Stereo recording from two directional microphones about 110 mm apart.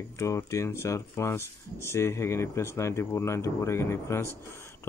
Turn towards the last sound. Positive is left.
turn(degrees=25)  # may be behind; listen again after turning